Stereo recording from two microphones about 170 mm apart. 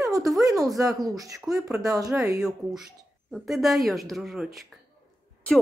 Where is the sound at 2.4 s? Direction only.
Centre (ahead or behind).